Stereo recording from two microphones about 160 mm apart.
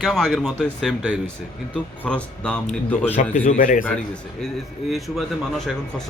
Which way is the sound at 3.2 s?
55° left (ahead or behind).